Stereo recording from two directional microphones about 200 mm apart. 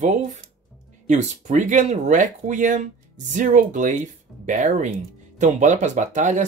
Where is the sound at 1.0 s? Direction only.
35° right (ahead or behind).